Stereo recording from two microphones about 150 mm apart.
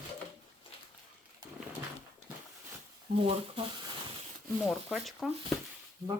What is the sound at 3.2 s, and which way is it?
Speech, 35° right (ahead or behind).